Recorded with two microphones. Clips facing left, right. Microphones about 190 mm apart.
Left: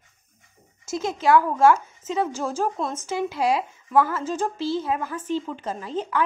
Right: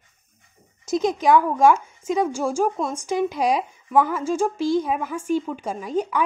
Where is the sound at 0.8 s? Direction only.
15° right (ahead or behind).